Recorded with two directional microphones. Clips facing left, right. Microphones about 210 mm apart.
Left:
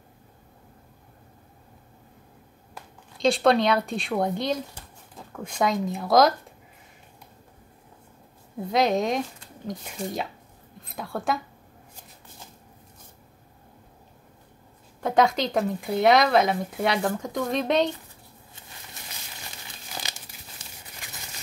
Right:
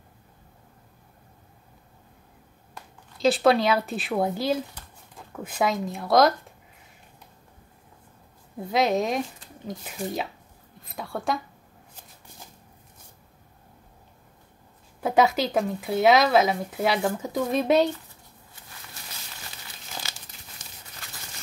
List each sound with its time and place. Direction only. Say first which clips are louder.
3.2 s speech: even; 5° right (ahead or behind)
8.6 s speech: left 1 dB; centre (ahead or behind)
15.0 s speech: even; 5° right (ahead or behind)
20.1 s crumpling: left 1 dB; 15° left (ahead or behind)
21.0 s a sound: left 1 dB; 15° left (ahead or behind)